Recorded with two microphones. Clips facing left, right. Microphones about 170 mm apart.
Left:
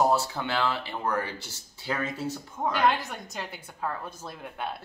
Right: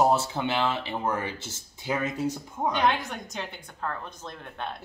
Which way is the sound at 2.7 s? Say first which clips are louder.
Left 1 dB; centre (ahead or behind).